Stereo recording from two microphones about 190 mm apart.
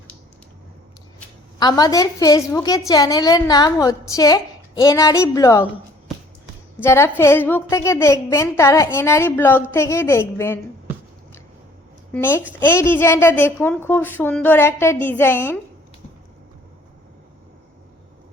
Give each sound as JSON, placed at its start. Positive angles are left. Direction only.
{"t": 1.5, "sound": "a woman's voice", "side_deg": 20}
{"t": 6.7, "sound": "a woman's voice", "side_deg": 15}
{"t": 12.1, "sound": "a woman's voice", "side_deg": 10}